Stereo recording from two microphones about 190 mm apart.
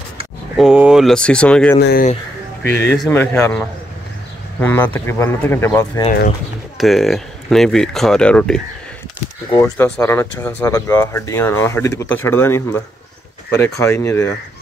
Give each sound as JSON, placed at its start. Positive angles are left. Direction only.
{"t": 0.6, "sound": "speech", "side_deg": -5}
{"t": 1.8, "sound": "speech", "side_deg": 60}
{"t": 2.7, "sound": "speech", "side_deg": 10}
{"t": 6.8, "sound": "speech", "side_deg": 0}
{"t": 9.6, "sound": "speech", "side_deg": 10}